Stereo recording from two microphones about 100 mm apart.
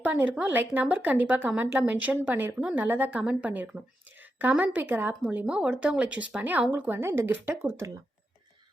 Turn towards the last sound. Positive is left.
turn(degrees=-20)  # may be behind; listen again after turning